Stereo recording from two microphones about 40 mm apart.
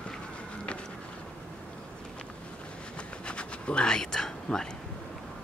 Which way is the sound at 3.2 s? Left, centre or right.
Left.